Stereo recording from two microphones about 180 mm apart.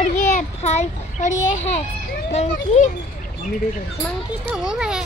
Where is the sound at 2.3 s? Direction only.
40° left (ahead or behind).